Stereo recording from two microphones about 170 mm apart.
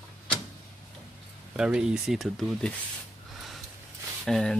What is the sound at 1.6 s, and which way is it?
Speech, 5° right (ahead or behind).